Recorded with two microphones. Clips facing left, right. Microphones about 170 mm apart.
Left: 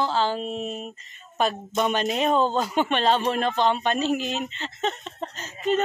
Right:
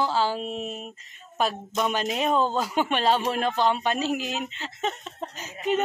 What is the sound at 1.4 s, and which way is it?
A woman's voice, centre (ahead or behind).